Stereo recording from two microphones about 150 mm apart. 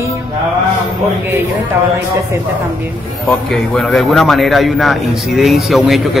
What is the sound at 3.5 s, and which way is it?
A man's voice, centre (ahead or behind).